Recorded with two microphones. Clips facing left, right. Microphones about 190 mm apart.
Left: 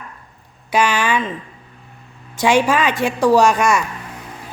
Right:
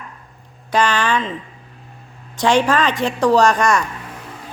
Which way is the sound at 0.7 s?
10° left (ahead or behind).